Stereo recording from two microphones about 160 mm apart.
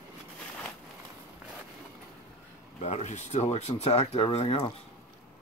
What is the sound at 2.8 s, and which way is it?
Speech, 45° left (ahead or behind).